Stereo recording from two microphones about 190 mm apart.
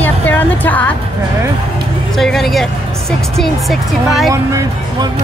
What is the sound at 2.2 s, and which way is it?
Speech, centre (ahead or behind).